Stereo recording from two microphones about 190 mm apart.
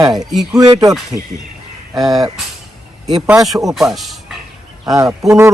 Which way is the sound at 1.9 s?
20° right (ahead or behind).